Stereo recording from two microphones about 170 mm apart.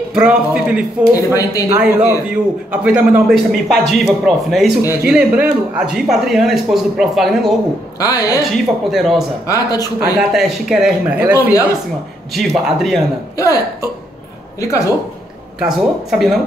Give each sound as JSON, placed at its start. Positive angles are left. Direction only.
{"t": 0.1, "sound": "speech", "side_deg": -5}
{"t": 1.1, "sound": "speech", "side_deg": 20}
{"t": 1.8, "sound": "a man's voice", "side_deg": -5}
{"t": 8.0, "sound": "speech", "side_deg": 20}
{"t": 8.5, "sound": "speech", "side_deg": 0}
{"t": 9.5, "sound": "speech", "side_deg": 20}
{"t": 9.9, "sound": "speech", "side_deg": -5}
{"t": 12.4, "sound": "speech", "side_deg": 0}
{"t": 13.4, "sound": "speech", "side_deg": 20}
{"t": 15.6, "sound": "speech", "side_deg": 0}